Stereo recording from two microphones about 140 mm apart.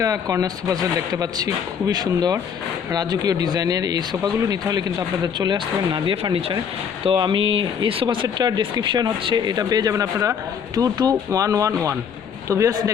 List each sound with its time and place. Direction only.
0.0 s speech: 25° right (ahead or behind)